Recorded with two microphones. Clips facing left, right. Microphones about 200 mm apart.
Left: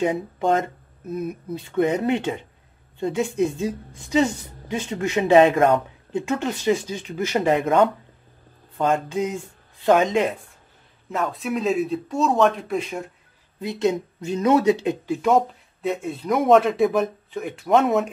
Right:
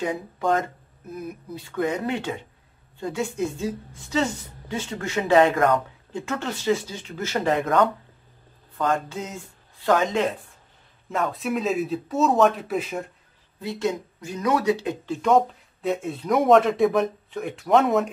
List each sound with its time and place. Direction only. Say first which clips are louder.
0.0 s speech: left 4 dB; 25° left (ahead or behind)
11.1 s speech: even; centre (ahead or behind)
13.6 s speech: left 4 dB; 20° left (ahead or behind)
15.0 s speech: even; 5° left (ahead or behind)